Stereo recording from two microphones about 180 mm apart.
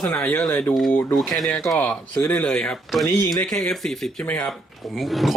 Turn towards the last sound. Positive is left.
turn(degrees=0)  # may be behind; listen again after turning